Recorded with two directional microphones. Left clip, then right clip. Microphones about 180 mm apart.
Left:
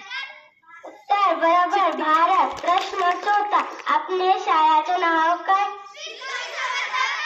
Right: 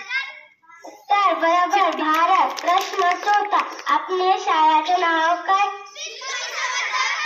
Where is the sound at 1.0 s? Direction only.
35° right (ahead or behind).